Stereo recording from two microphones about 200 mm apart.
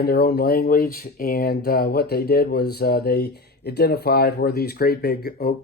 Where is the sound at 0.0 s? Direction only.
50° left (ahead or behind).